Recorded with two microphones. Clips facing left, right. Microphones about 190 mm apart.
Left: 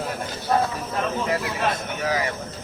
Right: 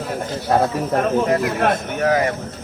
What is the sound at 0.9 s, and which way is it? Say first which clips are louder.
Speech: right 9 dB; 55° right (ahead or behind).